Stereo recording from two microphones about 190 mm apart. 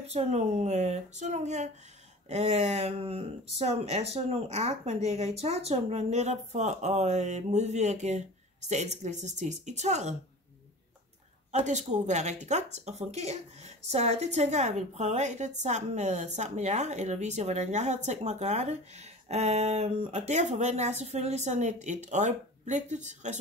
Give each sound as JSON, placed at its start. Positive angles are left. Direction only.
{"t": 0.0, "sound": "speech", "side_deg": -35}
{"t": 11.5, "sound": "speech", "side_deg": -40}